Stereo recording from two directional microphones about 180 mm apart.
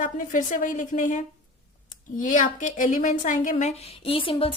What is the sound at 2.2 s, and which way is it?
A woman's voice, 45° left (ahead or behind).